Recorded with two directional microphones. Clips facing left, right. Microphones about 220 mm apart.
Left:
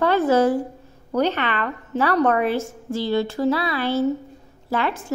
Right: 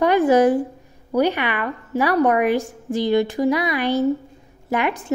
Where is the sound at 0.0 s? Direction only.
15° right (ahead or behind).